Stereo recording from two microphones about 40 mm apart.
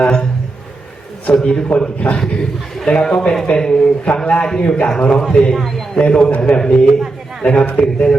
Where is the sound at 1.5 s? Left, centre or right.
Left.